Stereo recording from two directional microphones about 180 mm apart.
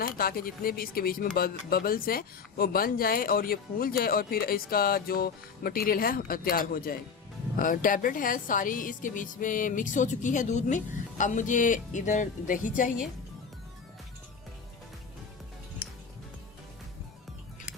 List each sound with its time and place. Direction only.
0.0 s speech: 55° left (ahead or behind)